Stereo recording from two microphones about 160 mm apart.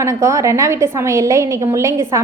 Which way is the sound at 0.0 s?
20° right (ahead or behind).